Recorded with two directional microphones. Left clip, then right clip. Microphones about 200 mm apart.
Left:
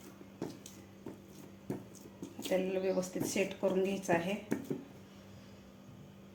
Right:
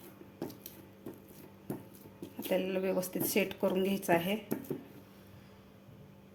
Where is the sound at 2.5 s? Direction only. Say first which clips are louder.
Right 1 dB; 35° right (ahead or behind).